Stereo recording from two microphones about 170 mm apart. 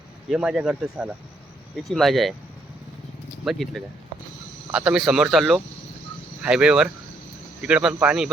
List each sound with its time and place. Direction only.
0.3 s speech: 5° right (ahead or behind)
3.4 s speech: centre (ahead or behind)